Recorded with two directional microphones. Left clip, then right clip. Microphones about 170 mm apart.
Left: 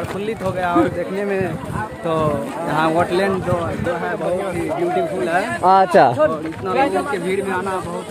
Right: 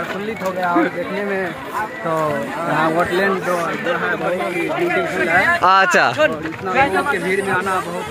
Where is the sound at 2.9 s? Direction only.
35° left (ahead or behind).